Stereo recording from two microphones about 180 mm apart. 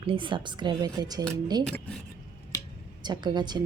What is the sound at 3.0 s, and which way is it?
Speech, 25° right (ahead or behind).